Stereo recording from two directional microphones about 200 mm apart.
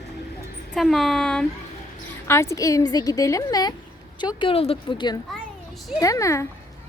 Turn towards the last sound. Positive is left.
turn(degrees=15)  # may be behind; listen again after turning